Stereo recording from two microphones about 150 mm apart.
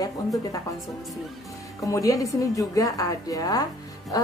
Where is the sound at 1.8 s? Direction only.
25° left (ahead or behind).